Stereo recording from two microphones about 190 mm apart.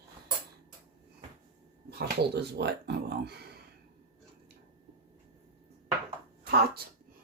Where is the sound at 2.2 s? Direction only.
60° right (ahead or behind).